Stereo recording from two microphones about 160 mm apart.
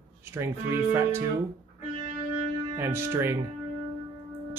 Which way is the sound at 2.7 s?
15° right (ahead or behind).